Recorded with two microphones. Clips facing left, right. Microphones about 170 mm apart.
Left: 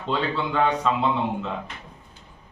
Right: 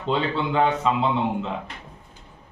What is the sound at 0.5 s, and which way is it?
Speech, 20° right (ahead or behind).